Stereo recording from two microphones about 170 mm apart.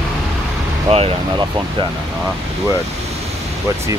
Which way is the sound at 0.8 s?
35° right (ahead or behind).